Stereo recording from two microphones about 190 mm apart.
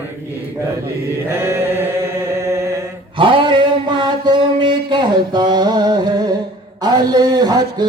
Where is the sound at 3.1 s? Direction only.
25° right (ahead or behind).